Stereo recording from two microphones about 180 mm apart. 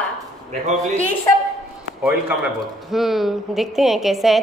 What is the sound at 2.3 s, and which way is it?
A man's voice, 10° right (ahead or behind).